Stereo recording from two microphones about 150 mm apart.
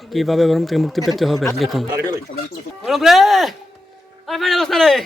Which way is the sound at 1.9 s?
15° right (ahead or behind).